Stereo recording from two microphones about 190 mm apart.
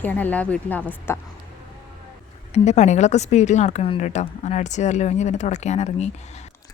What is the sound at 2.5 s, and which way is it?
A woman's voice, 35° left (ahead or behind).